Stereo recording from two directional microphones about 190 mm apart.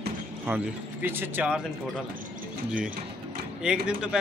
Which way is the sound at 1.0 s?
10° right (ahead or behind).